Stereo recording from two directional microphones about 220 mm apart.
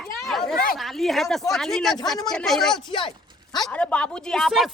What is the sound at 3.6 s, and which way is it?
Speech, 5° left (ahead or behind).